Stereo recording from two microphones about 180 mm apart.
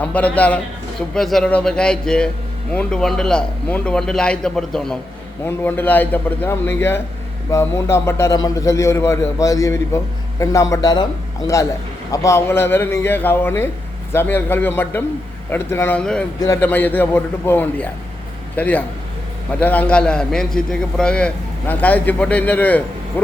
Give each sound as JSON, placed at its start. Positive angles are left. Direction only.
{"t": 0.0, "sound": "a man's voice", "side_deg": 10}